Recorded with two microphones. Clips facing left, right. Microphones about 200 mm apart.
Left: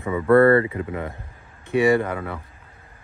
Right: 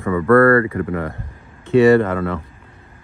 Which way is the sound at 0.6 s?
15° left (ahead or behind).